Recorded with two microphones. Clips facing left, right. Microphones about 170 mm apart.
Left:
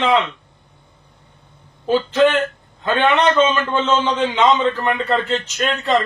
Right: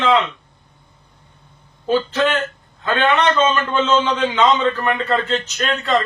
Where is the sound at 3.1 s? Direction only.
15° left (ahead or behind).